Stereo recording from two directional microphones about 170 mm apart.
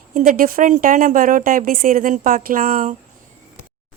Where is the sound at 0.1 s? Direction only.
50° right (ahead or behind).